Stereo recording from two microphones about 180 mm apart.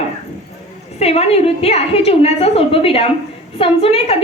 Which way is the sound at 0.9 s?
35° left (ahead or behind).